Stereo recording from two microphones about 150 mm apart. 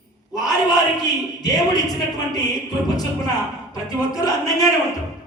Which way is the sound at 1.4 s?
25° left (ahead or behind).